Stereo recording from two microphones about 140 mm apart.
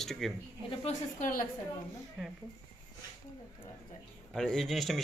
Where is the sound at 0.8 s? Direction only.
60° left (ahead or behind).